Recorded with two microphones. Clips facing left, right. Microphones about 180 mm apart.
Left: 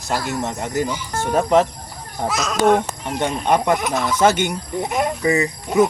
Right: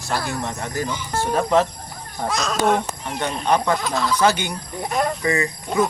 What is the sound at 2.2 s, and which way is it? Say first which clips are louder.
Speech: left 3 dB; 5° left (ahead or behind).